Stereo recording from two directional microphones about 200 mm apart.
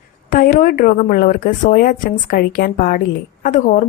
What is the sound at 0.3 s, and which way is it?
A woman's voice, 45° left (ahead or behind).